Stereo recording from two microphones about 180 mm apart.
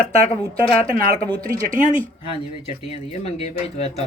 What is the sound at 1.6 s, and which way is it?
Speech, 45° right (ahead or behind).